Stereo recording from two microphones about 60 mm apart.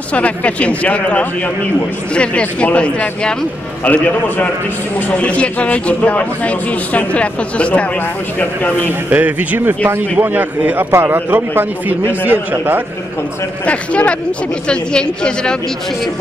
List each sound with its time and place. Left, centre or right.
0.1 s a man's voice: left
9.1 s a man's voice: right
10.9 s a man's voice: right
13.7 s a man's voice: left